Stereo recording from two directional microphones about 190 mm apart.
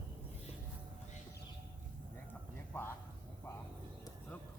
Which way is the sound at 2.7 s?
10° left (ahead or behind).